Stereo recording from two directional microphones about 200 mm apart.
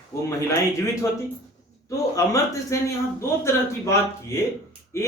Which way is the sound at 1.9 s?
15° left (ahead or behind).